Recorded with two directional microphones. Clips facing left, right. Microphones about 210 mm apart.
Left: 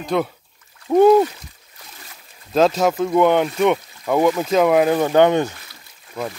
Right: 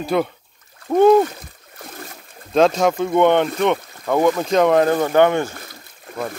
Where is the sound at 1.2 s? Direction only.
50° right (ahead or behind).